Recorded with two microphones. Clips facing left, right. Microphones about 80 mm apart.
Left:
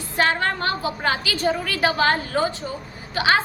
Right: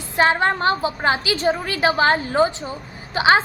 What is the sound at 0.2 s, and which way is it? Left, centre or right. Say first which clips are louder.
A woman's voice: right 4 dB; right.